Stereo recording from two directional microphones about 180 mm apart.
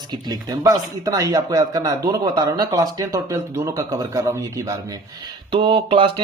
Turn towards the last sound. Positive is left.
turn(degrees=-30)  # may be behind; listen again after turning